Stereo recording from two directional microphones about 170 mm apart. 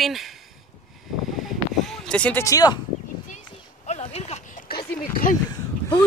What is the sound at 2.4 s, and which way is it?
Speech, 20° left (ahead or behind).